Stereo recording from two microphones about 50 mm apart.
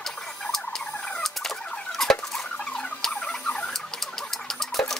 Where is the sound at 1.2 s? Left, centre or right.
Centre.